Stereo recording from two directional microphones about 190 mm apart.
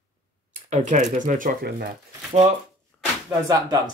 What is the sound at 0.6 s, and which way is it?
Speech, 40° right (ahead or behind).